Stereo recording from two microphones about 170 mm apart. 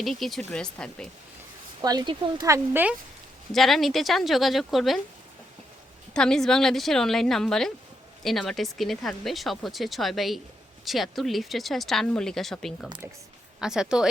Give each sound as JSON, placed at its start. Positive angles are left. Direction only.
{"t": 0.0, "sound": "speech", "side_deg": 0}
{"t": 1.8, "sound": "speech", "side_deg": -25}
{"t": 3.5, "sound": "speech", "side_deg": 0}
{"t": 6.1, "sound": "speech", "side_deg": 5}